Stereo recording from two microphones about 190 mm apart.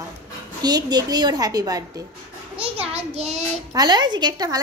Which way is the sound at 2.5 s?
30° right (ahead or behind).